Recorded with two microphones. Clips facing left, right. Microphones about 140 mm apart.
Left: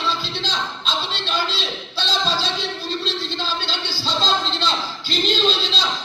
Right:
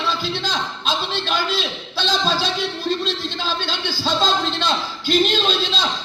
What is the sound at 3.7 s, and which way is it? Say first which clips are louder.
A man's voice: right 3 dB; 50° right (ahead or behind).